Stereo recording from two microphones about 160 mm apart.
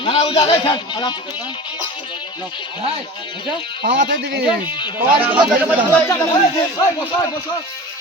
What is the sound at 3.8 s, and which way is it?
Speech, 90° right.